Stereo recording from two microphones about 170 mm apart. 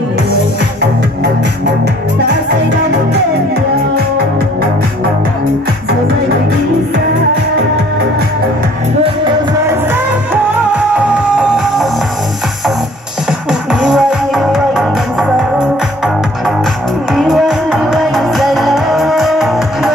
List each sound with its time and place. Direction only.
9.0 s music: 30° right (ahead or behind)
9.8 s music: 10° right (ahead or behind)
13.5 s music: 5° right (ahead or behind)
17.1 s music: centre (ahead or behind)